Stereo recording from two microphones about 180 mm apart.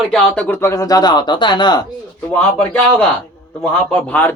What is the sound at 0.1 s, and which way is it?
Speech, 5° left (ahead or behind).